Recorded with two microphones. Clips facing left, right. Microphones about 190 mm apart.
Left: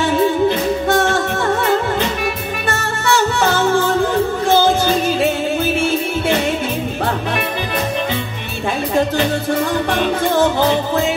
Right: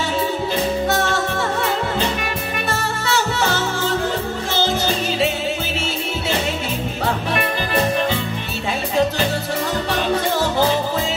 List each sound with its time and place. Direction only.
2.7 s music: 55° left (ahead or behind)